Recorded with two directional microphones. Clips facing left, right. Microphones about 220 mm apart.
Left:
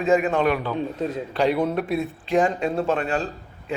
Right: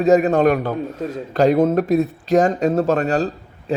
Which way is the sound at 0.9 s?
Centre (ahead or behind).